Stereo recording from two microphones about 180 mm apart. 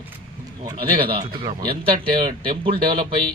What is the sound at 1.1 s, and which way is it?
A man's voice, 25° right (ahead or behind).